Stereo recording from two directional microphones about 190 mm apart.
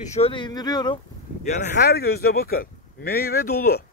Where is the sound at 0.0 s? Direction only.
35° left (ahead or behind).